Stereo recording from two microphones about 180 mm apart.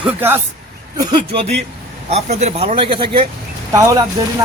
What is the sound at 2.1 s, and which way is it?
Speech, 35° right (ahead or behind).